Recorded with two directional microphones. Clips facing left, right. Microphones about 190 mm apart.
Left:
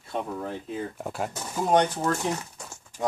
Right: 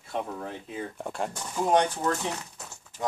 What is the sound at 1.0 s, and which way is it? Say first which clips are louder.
Speech: left 1 dB; 5° left (ahead or behind).